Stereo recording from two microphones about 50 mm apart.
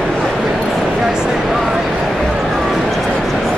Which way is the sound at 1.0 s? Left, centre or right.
Centre.